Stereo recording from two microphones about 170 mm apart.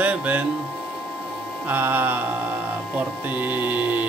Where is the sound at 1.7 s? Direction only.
10° right (ahead or behind).